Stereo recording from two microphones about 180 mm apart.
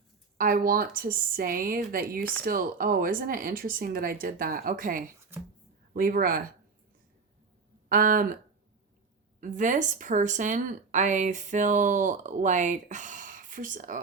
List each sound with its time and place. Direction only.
0.3 s speech: 55° right (ahead or behind)
5.3 s speech: 15° right (ahead or behind)
5.9 s speech: 50° right (ahead or behind)
7.9 s speech: 50° right (ahead or behind)
9.4 s speech: 45° right (ahead or behind)